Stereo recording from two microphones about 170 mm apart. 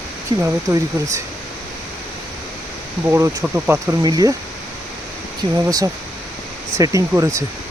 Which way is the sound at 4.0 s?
25° right (ahead or behind).